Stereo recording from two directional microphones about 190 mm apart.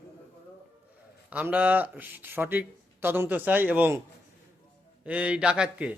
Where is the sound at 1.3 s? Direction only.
10° right (ahead or behind).